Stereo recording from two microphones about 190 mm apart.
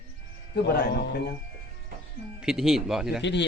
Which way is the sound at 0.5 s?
55° left (ahead or behind).